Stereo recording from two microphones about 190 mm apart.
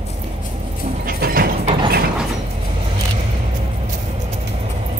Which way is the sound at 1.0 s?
50° right (ahead or behind).